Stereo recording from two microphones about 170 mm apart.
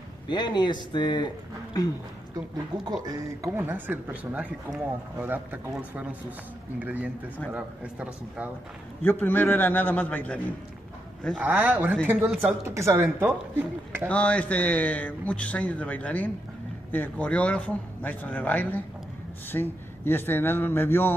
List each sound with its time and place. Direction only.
0.3 s speech: 25° left (ahead or behind)
3.4 s a woman's voice: 10° right (ahead or behind)
9.0 s speech: 10° left (ahead or behind)
11.3 s a woman's voice: 10° right (ahead or behind)
14.0 s speech: 10° left (ahead or behind)